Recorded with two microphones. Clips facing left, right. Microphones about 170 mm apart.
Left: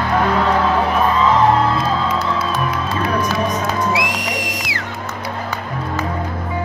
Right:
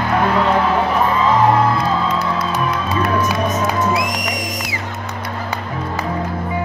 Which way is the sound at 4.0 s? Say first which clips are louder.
Even; 90° left.